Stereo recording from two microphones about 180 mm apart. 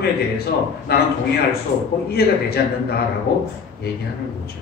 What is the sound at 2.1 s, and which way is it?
Speech, 60° left (ahead or behind).